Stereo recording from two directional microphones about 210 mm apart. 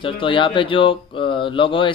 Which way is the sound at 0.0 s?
25° left (ahead or behind).